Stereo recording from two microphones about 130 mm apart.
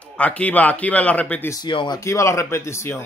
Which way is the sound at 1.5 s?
35° left (ahead or behind).